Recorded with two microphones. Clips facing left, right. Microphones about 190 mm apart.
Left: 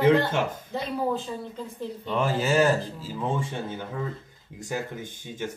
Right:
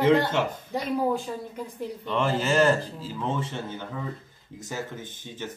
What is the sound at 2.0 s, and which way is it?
Speech, 10° left (ahead or behind).